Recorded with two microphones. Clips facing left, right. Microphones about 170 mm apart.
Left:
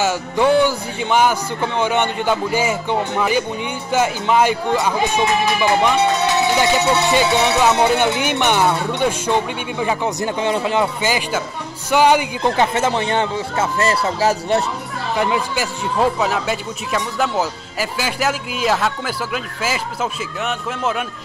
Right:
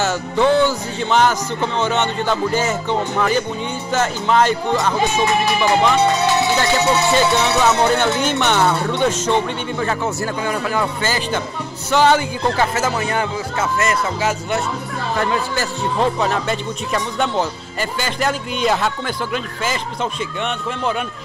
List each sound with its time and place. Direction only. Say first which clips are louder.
0.0 s speech: even; 10° left (ahead or behind)
12.7 s speech: left 2 dB; 30° left (ahead or behind)
15.1 s speech: left 1 dB; 10° left (ahead or behind)